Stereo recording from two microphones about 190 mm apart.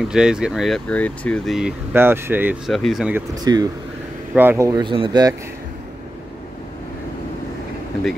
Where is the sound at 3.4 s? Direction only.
20° right (ahead or behind).